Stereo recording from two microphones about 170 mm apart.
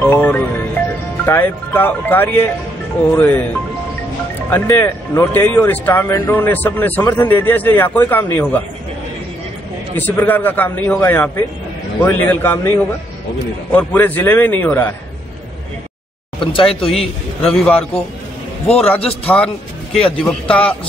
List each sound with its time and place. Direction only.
0.0 s music: 10° left (ahead or behind)
1.2 s speech: 10° left (ahead or behind)
4.5 s speech: 10° left (ahead or behind)
9.9 s speech: 10° left (ahead or behind)
16.3 s speech: 30° left (ahead or behind)
17.4 s speech: 10° left (ahead or behind)
18.7 s speech: 35° left (ahead or behind)
19.2 s speech: 5° left (ahead or behind)